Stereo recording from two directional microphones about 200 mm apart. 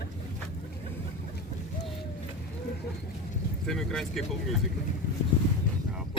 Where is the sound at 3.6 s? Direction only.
5° left (ahead or behind).